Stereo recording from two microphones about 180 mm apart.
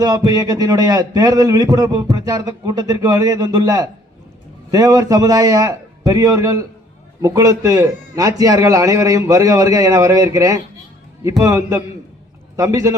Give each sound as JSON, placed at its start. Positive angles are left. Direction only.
{"t": 0.0, "sound": "a man's voice", "side_deg": -20}